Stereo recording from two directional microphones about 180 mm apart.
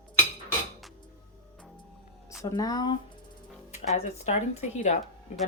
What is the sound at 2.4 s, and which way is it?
Speech, 20° left (ahead or behind).